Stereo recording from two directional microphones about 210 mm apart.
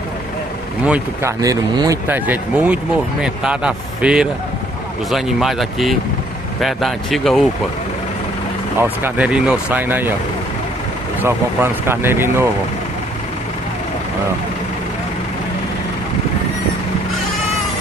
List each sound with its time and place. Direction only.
0.8 s speech: 10° right (ahead or behind)
8.7 s speech: 10° right (ahead or behind)
11.1 s speech: 10° right (ahead or behind)